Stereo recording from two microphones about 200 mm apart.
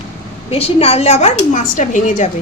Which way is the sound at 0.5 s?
30° left (ahead or behind).